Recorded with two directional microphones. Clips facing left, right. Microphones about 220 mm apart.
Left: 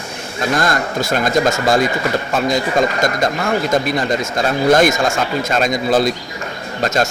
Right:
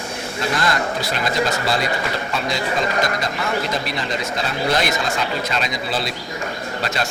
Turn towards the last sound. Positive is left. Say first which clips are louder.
# left 6 dB
turn(degrees=45)  # may be behind; listen again after turning